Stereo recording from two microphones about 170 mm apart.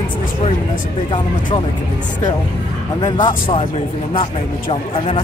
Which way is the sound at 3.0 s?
25° left (ahead or behind).